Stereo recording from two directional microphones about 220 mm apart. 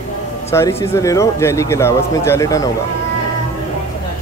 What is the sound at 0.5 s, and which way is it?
Speech, 10° left (ahead or behind).